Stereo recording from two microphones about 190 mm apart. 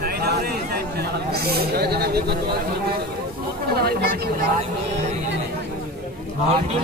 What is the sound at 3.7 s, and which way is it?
Speech, 55° right (ahead or behind).